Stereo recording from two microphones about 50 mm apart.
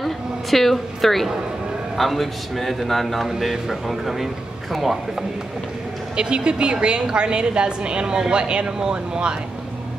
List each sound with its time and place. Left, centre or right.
0.0 s a sound: centre
2.0 s a man's voice: centre
6.1 s a woman's voice: centre